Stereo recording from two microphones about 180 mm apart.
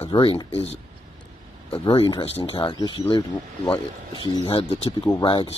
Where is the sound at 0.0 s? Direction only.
30° left (ahead or behind).